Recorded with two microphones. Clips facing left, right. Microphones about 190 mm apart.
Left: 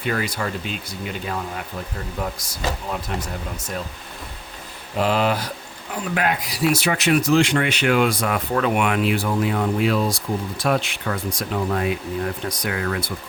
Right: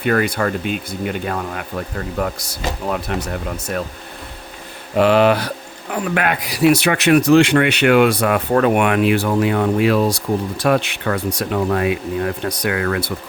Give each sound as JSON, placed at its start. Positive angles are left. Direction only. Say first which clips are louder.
{"t": 0.0, "sound": "speech", "louder": "right 7 dB", "side_deg": -60}
{"t": 4.9, "sound": "speech", "louder": "right 7 dB", "side_deg": -70}